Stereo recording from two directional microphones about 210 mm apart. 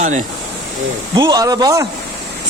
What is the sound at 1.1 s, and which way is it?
Speech, 20° right (ahead or behind).